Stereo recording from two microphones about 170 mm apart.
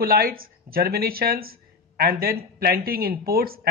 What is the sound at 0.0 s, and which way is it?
Speech, 60° right (ahead or behind).